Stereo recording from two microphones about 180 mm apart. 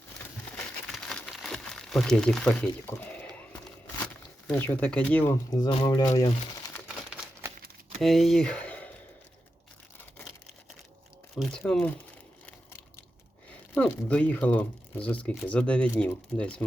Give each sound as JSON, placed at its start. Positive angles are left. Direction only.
{"t": 0.5, "sound": "crumpling", "side_deg": 0}
{"t": 4.0, "sound": "speech", "side_deg": 10}
{"t": 5.5, "sound": "speech", "side_deg": 25}
{"t": 6.8, "sound": "crumpling", "side_deg": -5}
{"t": 7.9, "sound": "speech", "side_deg": 0}
{"t": 11.3, "sound": "speech", "side_deg": 5}
{"t": 13.5, "sound": "speech", "side_deg": 10}